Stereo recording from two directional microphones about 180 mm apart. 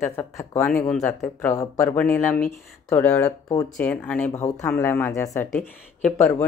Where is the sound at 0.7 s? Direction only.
5° left (ahead or behind).